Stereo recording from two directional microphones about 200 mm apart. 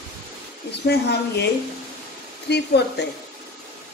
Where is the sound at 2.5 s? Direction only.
55° left (ahead or behind).